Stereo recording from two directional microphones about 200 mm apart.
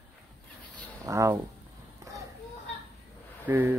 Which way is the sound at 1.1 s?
15° right (ahead or behind).